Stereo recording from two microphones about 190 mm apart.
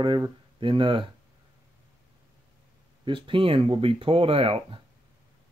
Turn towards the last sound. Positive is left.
turn(degrees=-30)  # may be behind; listen again after turning